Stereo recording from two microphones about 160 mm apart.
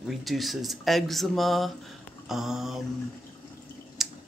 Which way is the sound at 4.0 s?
Centre (ahead or behind).